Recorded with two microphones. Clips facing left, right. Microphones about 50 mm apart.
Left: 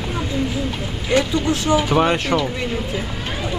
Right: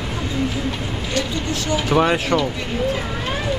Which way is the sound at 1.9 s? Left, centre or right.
Centre.